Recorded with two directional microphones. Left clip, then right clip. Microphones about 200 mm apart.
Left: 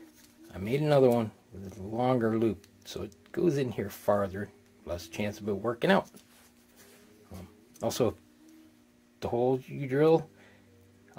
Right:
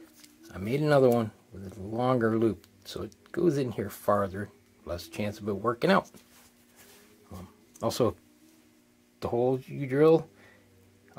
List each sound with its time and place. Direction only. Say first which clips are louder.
0.5 s speech: right 1 dB; 20° right (ahead or behind)
7.8 s speech: right 2 dB; 20° right (ahead or behind)
9.2 s speech: right 1 dB; 15° right (ahead or behind)